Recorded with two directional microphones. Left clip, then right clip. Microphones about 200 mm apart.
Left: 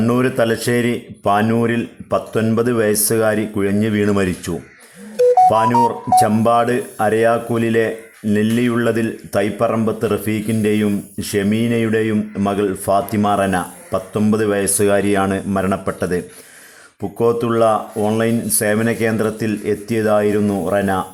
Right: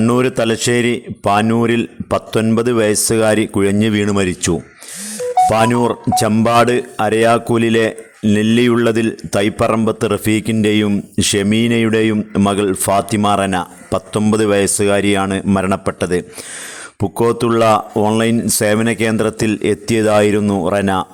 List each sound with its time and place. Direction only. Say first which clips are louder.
0.0 s speech: right 2 dB; 35° right (ahead or behind)